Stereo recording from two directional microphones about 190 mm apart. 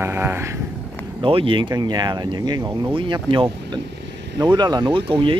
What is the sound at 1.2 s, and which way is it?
Speech, 25° right (ahead or behind).